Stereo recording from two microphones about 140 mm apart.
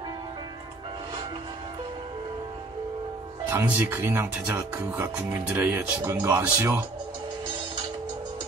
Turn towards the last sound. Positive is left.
turn(degrees=-15)  # may be behind; listen again after turning